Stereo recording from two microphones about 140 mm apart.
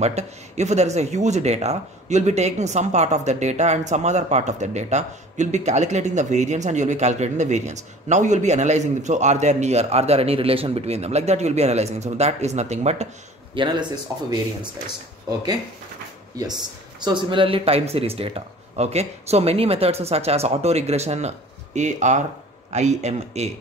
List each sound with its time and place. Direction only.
0.0 s speech: 50° right (ahead or behind)
13.6 s speech: 35° right (ahead or behind)
16.4 s speech: 25° right (ahead or behind); by 23.5 s 55° right (ahead or behind)